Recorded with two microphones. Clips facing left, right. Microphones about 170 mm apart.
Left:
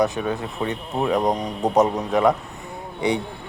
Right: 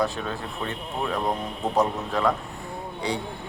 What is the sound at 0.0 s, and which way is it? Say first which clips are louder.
Speech: left 5 dB; 15° left (ahead or behind).